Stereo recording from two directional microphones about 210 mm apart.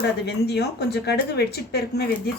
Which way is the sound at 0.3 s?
55° left (ahead or behind).